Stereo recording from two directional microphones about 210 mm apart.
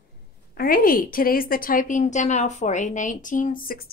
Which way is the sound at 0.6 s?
45° left (ahead or behind).